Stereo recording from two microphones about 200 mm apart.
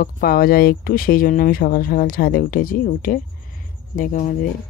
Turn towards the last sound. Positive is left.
turn(degrees=40)  # may be behind; listen again after turning